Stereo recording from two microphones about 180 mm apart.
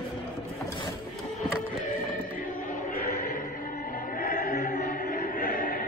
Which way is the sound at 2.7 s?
50° left (ahead or behind).